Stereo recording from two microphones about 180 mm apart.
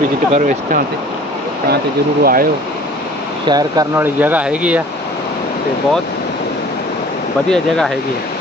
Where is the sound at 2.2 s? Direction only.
55° right (ahead or behind).